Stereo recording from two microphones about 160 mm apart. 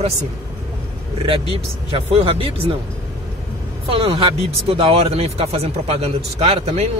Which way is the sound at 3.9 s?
40° right (ahead or behind).